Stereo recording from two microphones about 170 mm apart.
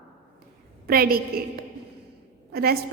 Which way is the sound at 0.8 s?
60° right (ahead or behind).